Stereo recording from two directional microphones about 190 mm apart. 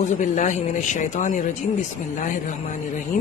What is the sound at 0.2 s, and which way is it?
A man's voice, 40° left (ahead or behind).